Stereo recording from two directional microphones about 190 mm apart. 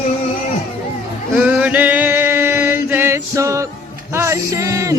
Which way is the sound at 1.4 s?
10° right (ahead or behind).